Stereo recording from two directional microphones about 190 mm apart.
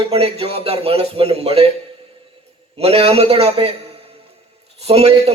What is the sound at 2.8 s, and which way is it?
Speech, 30° right (ahead or behind).